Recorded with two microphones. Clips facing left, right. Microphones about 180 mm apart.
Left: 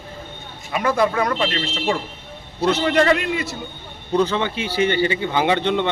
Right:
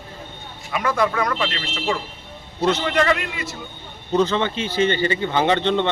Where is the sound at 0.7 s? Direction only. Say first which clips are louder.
Left 2 dB; 30° left (ahead or behind).